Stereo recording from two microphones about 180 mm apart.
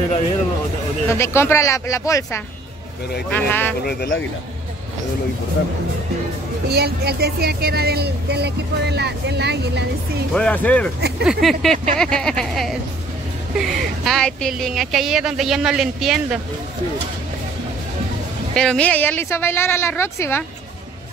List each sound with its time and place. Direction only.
1.1 s speech: 15° left (ahead or behind)
3.8 s speech: 65° left (ahead or behind)
6.7 s speech: 60° right (ahead or behind)
10.3 s speech: 5° left (ahead or behind)
11.0 s a sound: 65° right (ahead or behind)
11.2 s speech: centre (ahead or behind)
18.5 s speech: 5° left (ahead or behind)